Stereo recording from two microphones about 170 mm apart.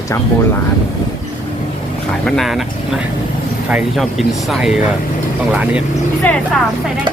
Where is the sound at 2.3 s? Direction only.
Centre (ahead or behind).